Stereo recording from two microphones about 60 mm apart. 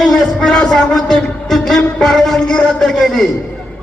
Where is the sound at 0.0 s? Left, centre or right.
Centre.